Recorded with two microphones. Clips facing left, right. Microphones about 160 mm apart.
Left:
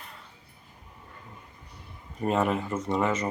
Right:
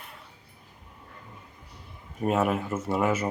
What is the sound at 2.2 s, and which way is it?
Speech, 5° right (ahead or behind).